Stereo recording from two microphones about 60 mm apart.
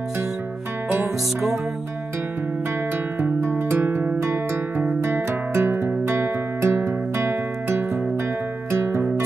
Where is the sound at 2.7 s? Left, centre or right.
Right.